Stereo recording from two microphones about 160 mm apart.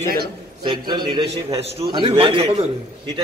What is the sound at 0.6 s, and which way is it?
A man's voice, 30° right (ahead or behind).